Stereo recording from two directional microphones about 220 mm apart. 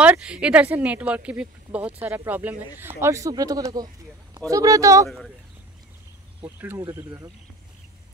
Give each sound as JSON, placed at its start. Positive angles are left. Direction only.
{"t": 0.0, "sound": "speech", "side_deg": -5}
{"t": 6.4, "sound": "speech", "side_deg": -10}